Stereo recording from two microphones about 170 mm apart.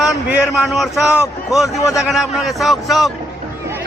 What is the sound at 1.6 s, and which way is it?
Speech, 20° left (ahead or behind).